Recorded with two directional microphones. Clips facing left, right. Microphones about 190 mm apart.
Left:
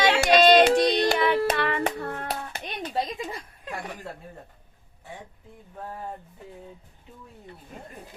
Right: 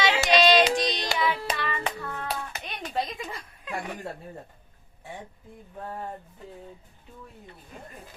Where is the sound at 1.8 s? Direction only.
55° left (ahead or behind).